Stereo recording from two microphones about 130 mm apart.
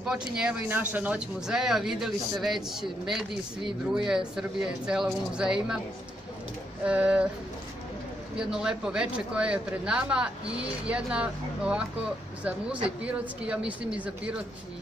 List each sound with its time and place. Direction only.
0.0 s speech: 5° right (ahead or behind)
6.8 s speech: 10° right (ahead or behind)
8.5 s speech: 5° right (ahead or behind)
13.0 s speech: 10° right (ahead or behind)